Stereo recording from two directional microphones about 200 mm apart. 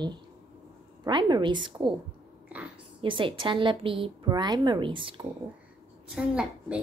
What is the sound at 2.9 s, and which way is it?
Speech, 25° right (ahead or behind).